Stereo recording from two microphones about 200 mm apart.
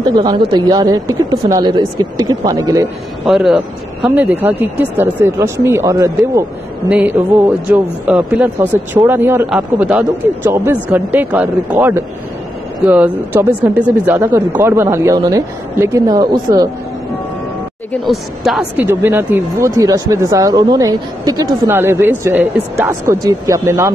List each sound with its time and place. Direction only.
0.0 s speech: 20° right (ahead or behind)
3.3 s speech: centre (ahead or behind); by 16.6 s 20° right (ahead or behind)
18.0 s speech: centre (ahead or behind)